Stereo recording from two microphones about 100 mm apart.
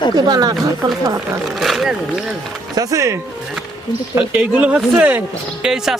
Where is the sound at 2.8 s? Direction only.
35° right (ahead or behind).